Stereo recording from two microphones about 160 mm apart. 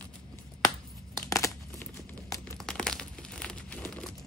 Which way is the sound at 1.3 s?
15° left (ahead or behind).